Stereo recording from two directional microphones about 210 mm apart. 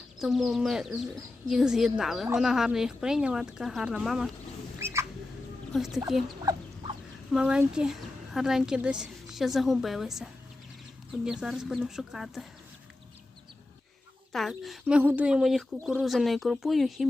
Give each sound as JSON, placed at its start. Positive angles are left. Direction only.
{"t": 0.2, "sound": "speech", "side_deg": 0}
{"t": 4.8, "sound": "rodents", "side_deg": -10}
{"t": 5.7, "sound": "speech", "side_deg": 0}
{"t": 6.2, "sound": "fowl", "side_deg": -20}
{"t": 7.3, "sound": "speech", "side_deg": -5}
{"t": 14.3, "sound": "speech", "side_deg": 0}